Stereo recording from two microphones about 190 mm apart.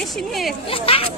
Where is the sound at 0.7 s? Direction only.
30° left (ahead or behind).